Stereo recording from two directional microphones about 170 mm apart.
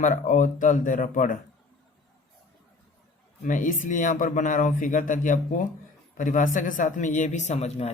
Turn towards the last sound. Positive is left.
turn(degrees=40)  # may be behind; listen again after turning